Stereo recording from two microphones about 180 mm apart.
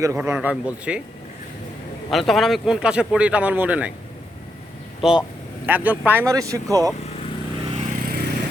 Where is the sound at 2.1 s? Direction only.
Centre (ahead or behind).